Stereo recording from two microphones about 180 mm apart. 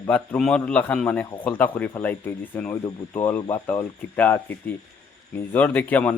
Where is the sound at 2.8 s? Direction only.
25° left (ahead or behind).